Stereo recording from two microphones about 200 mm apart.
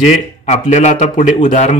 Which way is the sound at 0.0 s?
35° left (ahead or behind).